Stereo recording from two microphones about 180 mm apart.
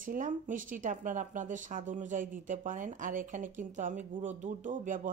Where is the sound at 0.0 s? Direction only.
50° right (ahead or behind).